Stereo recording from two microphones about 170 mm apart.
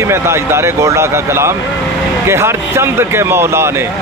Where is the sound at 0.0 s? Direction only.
15° right (ahead or behind).